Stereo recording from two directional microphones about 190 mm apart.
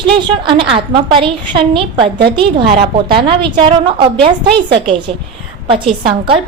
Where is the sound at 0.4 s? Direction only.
30° right (ahead or behind).